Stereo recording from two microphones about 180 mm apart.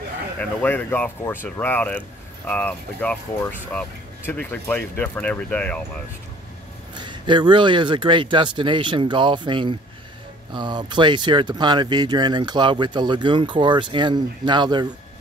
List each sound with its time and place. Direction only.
0.4 s speech: 10° left (ahead or behind)
7.0 s speech: 25° right (ahead or behind)